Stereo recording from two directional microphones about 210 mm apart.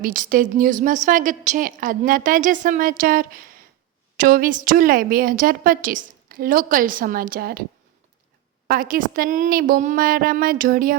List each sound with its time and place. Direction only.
0.0 s a woman's voice: 40° right (ahead or behind)
8.6 s a woman's voice: 45° right (ahead or behind)